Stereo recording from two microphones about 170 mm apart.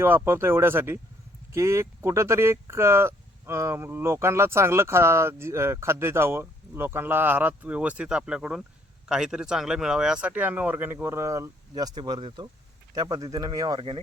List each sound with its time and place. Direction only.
0.0 s speech: 15° right (ahead or behind); by 14.0 s 30° right (ahead or behind)